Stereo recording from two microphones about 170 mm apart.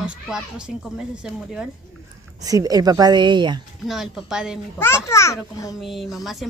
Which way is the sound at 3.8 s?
Centre (ahead or behind).